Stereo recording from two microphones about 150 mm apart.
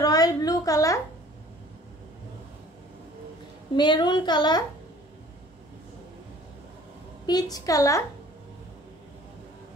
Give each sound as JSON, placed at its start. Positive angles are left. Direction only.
{"t": 0.0, "sound": "a sound", "side_deg": 25}
{"t": 3.7, "sound": "a woman's voice", "side_deg": 30}
{"t": 7.2, "sound": "a woman's voice", "side_deg": 25}